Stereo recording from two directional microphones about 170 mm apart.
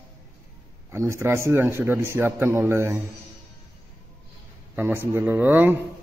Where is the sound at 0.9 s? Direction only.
15° right (ahead or behind).